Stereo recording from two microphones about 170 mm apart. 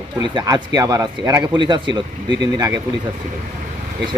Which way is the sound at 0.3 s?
25° right (ahead or behind).